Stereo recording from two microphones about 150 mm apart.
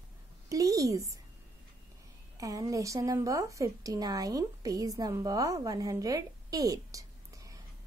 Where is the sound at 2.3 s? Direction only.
20° right (ahead or behind).